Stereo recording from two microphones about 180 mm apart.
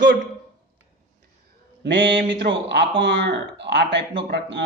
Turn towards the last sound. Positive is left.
turn(degrees=-70)  # may be behind; listen again after turning